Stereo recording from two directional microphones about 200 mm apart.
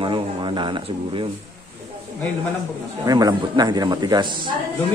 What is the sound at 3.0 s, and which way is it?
A man's voice, 20° right (ahead or behind).